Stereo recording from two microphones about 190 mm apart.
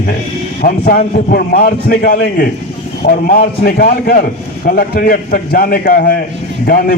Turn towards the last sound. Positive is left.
turn(degrees=50)  # may be behind; listen again after turning